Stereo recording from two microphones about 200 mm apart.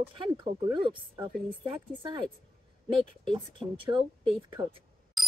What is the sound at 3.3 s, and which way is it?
Speech, 25° right (ahead or behind).